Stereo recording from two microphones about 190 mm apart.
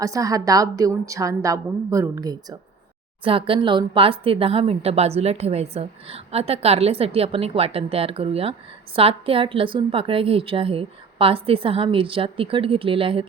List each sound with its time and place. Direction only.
0.0 s a woman's voice: 20° right (ahead or behind)